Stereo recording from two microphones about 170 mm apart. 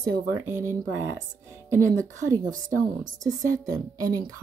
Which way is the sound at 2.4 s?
50° right (ahead or behind).